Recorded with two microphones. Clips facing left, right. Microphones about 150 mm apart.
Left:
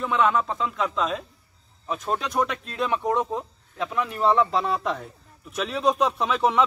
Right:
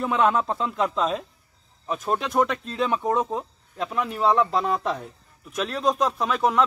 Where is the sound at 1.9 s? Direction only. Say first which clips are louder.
Right 2 dB; 5° right (ahead or behind).